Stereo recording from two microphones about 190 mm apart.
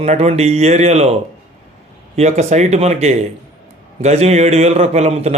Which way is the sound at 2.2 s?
35° right (ahead or behind).